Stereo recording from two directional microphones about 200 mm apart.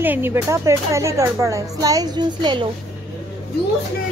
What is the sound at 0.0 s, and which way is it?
Speech, 10° right (ahead or behind).